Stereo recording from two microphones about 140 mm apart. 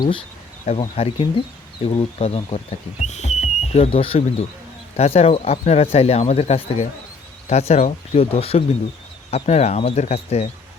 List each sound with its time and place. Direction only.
0.6 s speech: 60° left (ahead or behind)
1.2 s speech: 40° left (ahead or behind)